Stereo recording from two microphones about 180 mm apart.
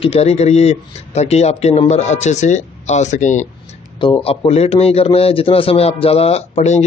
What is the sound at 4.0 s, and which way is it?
Speech, 30° left (ahead or behind).